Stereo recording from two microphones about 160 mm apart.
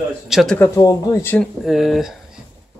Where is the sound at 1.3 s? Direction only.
Centre (ahead or behind).